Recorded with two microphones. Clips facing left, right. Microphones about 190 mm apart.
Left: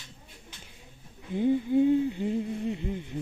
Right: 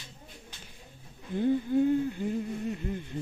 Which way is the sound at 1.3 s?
15° left (ahead or behind).